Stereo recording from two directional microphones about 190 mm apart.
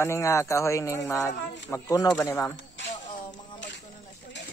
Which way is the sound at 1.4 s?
65° left (ahead or behind).